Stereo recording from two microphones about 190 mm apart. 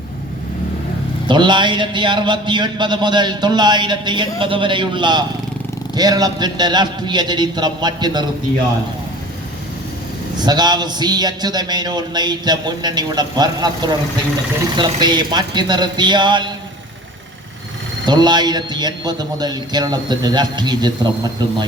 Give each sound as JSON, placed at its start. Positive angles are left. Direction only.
{"t": 1.3, "sound": "a man's voice", "side_deg": -25}
{"t": 10.4, "sound": "a man's voice", "side_deg": -20}
{"t": 18.0, "sound": "a man's voice", "side_deg": -25}